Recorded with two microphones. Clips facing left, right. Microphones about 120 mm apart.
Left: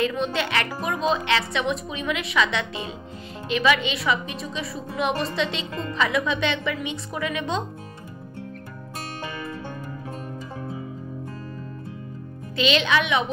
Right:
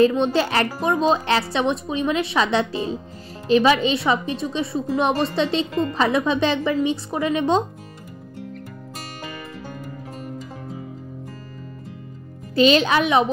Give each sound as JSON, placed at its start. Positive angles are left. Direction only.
{"t": 0.0, "sound": "a woman's voice", "side_deg": -30}
{"t": 12.5, "sound": "a woman's voice", "side_deg": -40}